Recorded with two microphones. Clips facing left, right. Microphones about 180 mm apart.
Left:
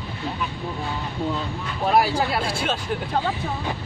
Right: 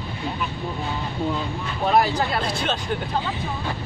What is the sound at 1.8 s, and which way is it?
Speech, 5° left (ahead or behind).